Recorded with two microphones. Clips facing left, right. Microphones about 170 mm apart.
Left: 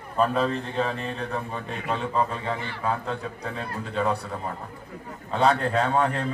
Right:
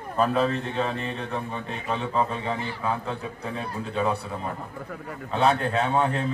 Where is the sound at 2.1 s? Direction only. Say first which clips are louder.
Right 2 dB; 10° right (ahead or behind).